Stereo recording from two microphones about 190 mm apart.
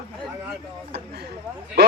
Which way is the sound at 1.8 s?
60° right (ahead or behind).